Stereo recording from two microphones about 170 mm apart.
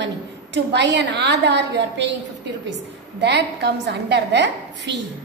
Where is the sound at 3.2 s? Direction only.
90° right.